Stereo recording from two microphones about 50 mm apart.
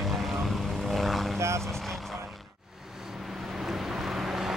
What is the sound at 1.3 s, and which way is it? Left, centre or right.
Speech, right.